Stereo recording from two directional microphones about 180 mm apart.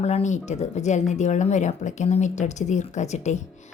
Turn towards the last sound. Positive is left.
turn(degrees=40)  # may be behind; listen again after turning